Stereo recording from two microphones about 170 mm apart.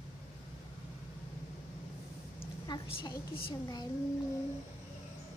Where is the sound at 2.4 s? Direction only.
30° left (ahead or behind).